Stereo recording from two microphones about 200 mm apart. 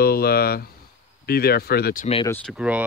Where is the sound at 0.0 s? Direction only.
50° left (ahead or behind).